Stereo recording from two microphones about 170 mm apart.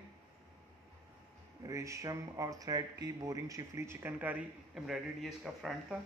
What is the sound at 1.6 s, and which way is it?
Speech, 20° right (ahead or behind).